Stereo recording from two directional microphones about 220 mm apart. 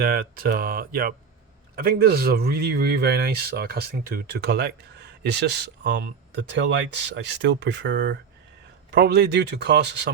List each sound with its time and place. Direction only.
0.0 s a man's voice: 40° right (ahead or behind)